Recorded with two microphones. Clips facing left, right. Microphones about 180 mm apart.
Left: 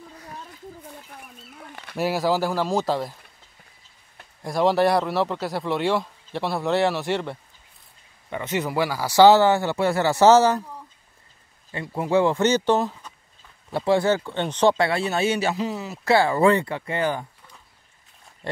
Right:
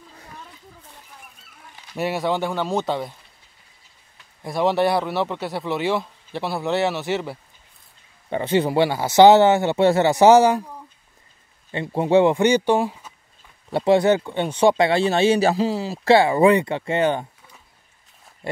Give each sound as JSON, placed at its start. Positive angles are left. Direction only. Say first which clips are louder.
{"t": 1.1, "sound": "a sound", "louder": "left 5 dB", "side_deg": 60}
{"t": 2.0, "sound": "speech", "louder": "left 1 dB", "side_deg": 0}
{"t": 4.4, "sound": "speech", "louder": "even", "side_deg": 0}
{"t": 8.3, "sound": "speech", "louder": "right 6 dB", "side_deg": -30}
{"t": 11.7, "sound": "speech", "louder": "right 4 dB", "side_deg": -25}
{"t": 13.7, "sound": "speech", "louder": "right 4 dB", "side_deg": -25}
{"t": 14.9, "sound": "speech", "louder": "right 5 dB", "side_deg": -25}
{"t": 16.2, "sound": "speech", "louder": "right 1 dB", "side_deg": -15}
{"t": 18.4, "sound": "speech", "louder": "right 2 dB", "side_deg": -10}